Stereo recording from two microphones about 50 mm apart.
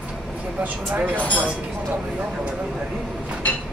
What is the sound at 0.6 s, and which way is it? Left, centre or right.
Speech, right.